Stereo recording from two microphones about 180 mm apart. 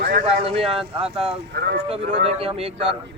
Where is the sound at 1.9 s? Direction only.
30° right (ahead or behind).